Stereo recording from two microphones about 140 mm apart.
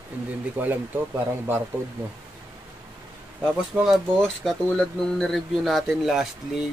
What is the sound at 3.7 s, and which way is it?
Speech, centre (ahead or behind).